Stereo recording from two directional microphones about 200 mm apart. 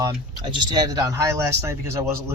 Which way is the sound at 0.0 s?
20° right (ahead or behind).